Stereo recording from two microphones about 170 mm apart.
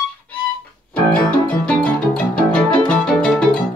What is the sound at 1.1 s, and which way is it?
Music, 10° left (ahead or behind).